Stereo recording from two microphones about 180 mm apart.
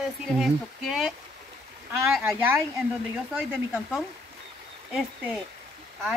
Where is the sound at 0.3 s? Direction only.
5° right (ahead or behind).